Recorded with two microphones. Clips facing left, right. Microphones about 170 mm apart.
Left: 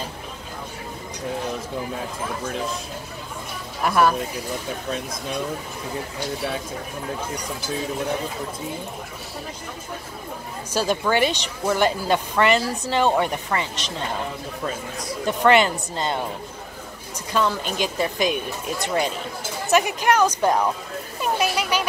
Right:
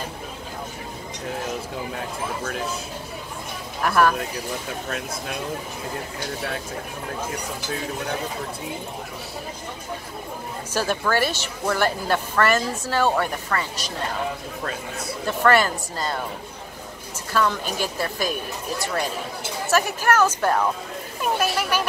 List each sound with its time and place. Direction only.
3.8 s a woman's voice: 10° left (ahead or behind)
10.7 s a woman's voice: 15° left (ahead or behind)
15.2 s a woman's voice: 20° left (ahead or behind)
17.5 s a woman's voice: 15° left (ahead or behind)
21.4 s a sound: 10° left (ahead or behind)